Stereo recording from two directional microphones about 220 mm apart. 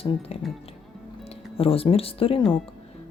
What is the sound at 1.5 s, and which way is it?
Speech, 25° left (ahead or behind).